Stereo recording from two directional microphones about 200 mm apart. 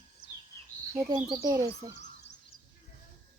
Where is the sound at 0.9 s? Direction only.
20° right (ahead or behind).